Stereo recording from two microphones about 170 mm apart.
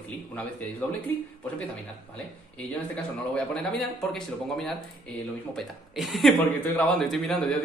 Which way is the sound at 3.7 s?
Centre (ahead or behind).